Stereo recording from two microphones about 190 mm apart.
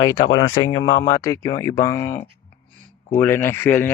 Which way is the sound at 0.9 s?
65° left (ahead or behind).